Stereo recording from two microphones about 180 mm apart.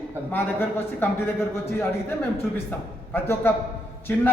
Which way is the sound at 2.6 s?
10° left (ahead or behind).